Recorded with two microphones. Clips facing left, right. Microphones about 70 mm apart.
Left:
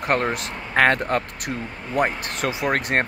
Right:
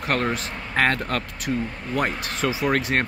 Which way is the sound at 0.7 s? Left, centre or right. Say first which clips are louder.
Left 4 dB; left.